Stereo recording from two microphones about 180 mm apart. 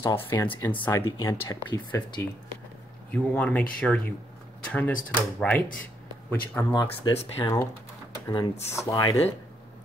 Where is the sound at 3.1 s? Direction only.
10° left (ahead or behind).